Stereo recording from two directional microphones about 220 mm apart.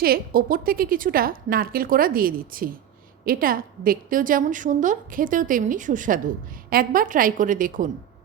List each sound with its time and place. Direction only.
0.0 s a woman's voice: 40° right (ahead or behind)